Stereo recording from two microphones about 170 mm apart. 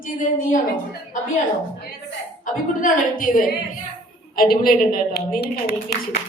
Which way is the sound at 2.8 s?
55° left (ahead or behind).